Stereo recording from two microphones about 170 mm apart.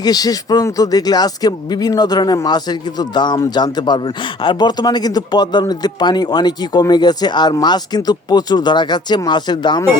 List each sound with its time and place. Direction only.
0.0 s speech: 20° left (ahead or behind)